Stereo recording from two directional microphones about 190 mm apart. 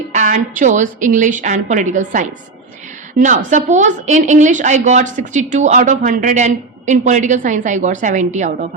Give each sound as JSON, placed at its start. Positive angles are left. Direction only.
{"t": 0.1, "sound": "a woman's voice", "side_deg": -40}